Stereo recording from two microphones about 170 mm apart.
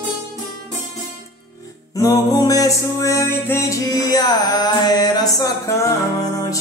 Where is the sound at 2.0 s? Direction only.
20° left (ahead or behind).